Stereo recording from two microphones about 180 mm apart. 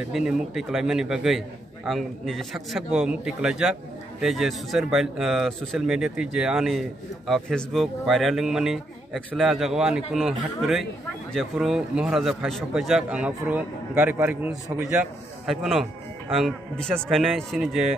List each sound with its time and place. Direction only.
0.1 s speech: 5° right (ahead or behind)